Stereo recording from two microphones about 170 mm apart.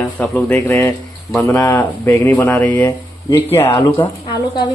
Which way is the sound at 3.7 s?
25° left (ahead or behind).